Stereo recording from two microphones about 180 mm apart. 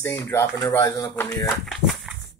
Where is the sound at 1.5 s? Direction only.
Centre (ahead or behind).